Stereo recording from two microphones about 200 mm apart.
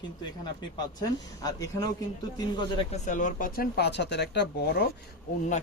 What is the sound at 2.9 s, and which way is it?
Speech, 35° left (ahead or behind).